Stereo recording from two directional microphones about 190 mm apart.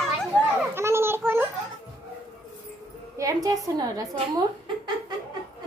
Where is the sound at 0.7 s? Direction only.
15° right (ahead or behind).